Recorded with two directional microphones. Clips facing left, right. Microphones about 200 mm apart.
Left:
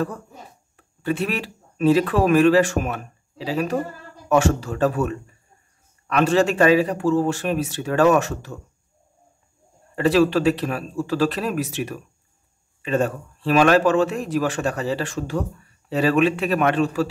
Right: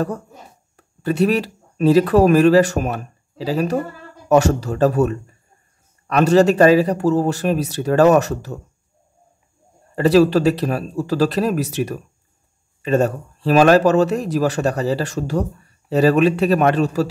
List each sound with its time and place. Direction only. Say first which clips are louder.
0.7 s speech: right 5 dB; 40° right (ahead or behind)
9.9 s speech: right 4 dB; 40° right (ahead or behind)